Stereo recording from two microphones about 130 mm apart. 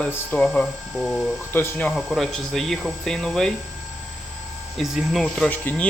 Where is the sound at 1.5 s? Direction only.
15° left (ahead or behind).